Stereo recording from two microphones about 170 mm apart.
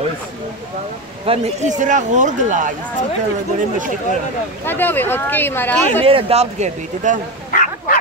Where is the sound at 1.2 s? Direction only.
35° right (ahead or behind).